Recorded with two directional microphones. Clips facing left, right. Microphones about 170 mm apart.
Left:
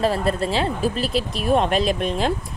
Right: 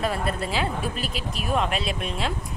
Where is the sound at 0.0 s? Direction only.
30° left (ahead or behind).